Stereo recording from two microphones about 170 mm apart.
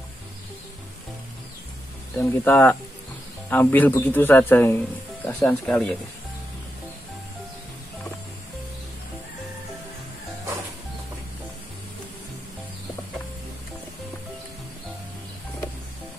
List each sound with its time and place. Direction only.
2.1 s speech: 10° left (ahead or behind)